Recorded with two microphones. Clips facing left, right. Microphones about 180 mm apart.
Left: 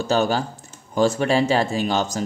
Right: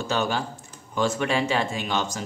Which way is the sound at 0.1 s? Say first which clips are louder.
Left 6 dB; 40° left (ahead or behind).